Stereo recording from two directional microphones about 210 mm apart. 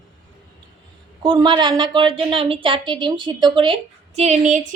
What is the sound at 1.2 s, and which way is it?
A woman's voice, 20° right (ahead or behind).